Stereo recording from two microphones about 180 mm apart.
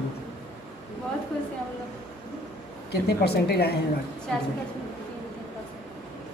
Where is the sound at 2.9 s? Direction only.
65° left (ahead or behind).